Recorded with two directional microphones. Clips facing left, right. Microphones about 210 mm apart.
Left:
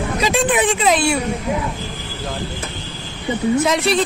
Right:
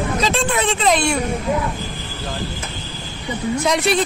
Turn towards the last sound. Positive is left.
turn(degrees=0)  # may be behind; listen again after turning